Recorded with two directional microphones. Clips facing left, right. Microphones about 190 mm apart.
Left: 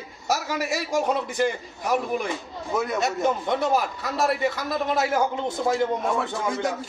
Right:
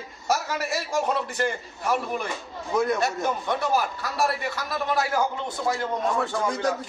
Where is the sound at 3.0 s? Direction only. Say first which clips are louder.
Left 2 dB; 20° left (ahead or behind).